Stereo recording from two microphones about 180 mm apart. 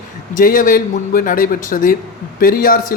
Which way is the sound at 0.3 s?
50° left (ahead or behind).